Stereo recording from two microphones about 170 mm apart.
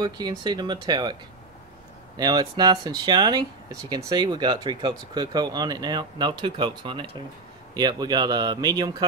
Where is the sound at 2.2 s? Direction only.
25° right (ahead or behind).